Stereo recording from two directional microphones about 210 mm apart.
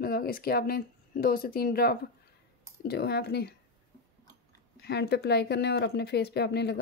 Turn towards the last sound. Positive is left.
turn(degrees=55)  # may be behind; listen again after turning